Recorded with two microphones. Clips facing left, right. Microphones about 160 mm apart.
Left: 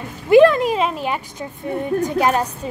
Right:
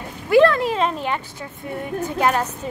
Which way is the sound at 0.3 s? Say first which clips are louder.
Left 4 dB; 15° left (ahead or behind).